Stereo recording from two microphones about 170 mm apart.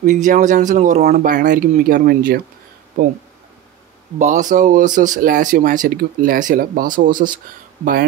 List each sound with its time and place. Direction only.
0.0 s speech: 50° right (ahead or behind)
4.2 s speech: 50° right (ahead or behind)